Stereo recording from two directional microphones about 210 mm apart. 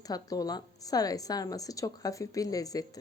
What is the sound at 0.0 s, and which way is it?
A woman's voice, 15° left (ahead or behind).